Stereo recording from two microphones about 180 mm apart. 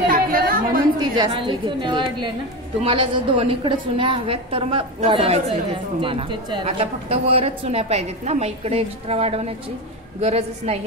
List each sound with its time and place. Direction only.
0.1 s chatter: 55° right (ahead or behind)
0.9 s a woman's voice: 25° right (ahead or behind)